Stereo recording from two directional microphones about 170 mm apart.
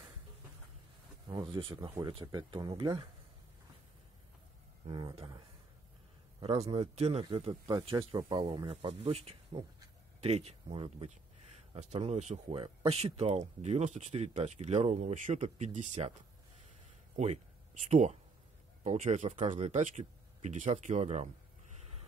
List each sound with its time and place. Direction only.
1.2 s speech: 30° right (ahead or behind)
1.8 s speech: 20° right (ahead or behind)
4.8 s speech: 30° right (ahead or behind)
6.4 s speech: 35° right (ahead or behind)
17.2 s speech: 45° right (ahead or behind)